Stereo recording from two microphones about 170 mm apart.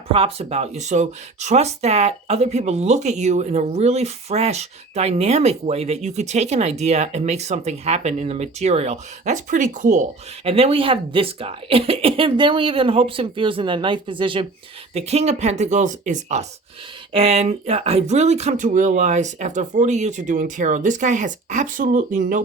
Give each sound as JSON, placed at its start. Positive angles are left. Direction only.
{"t": 0.1, "sound": "speech", "side_deg": -35}